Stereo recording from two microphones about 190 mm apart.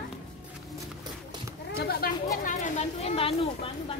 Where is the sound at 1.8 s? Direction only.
55° left (ahead or behind).